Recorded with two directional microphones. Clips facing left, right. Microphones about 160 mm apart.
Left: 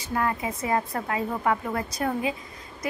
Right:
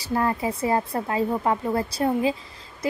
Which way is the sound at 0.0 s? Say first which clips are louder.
Right 3 dB; 30° right (ahead or behind).